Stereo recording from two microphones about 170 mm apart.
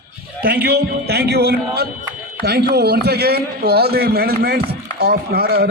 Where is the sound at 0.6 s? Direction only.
70° right (ahead or behind).